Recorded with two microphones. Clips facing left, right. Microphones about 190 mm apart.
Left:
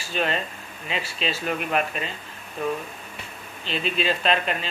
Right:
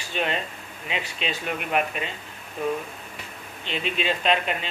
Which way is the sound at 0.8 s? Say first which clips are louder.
Left 1 dB; 15° right (ahead or behind).